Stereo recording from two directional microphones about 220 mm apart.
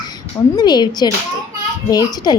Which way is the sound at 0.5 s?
20° left (ahead or behind).